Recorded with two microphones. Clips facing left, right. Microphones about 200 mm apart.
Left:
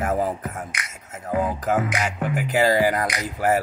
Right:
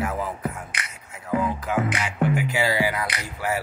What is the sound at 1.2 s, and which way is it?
Music, 45° left (ahead or behind).